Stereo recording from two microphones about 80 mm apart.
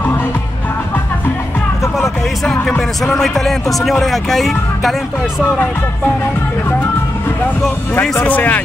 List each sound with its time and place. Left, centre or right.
2.0 s music: centre
3.0 s speech: centre
8.2 s speech: centre